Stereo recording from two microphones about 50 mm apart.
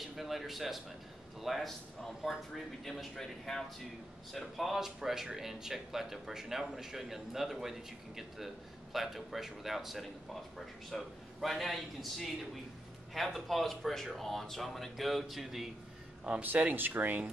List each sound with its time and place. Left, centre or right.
0.0 s a man's voice: centre
4.7 s speech: centre
8.9 s speech: centre
16.4 s speech: right
16.7 s speech: right